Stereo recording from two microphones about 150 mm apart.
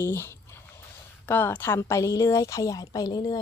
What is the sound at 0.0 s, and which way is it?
A woman's voice, 15° left (ahead or behind).